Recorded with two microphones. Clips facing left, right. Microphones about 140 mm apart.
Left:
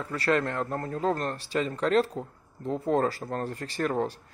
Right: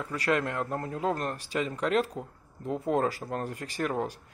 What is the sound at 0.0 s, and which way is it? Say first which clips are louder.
Speech: left 2 dB; 10° right (ahead or behind).